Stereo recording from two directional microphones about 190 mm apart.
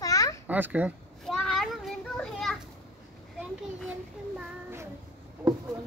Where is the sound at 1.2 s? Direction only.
Centre (ahead or behind).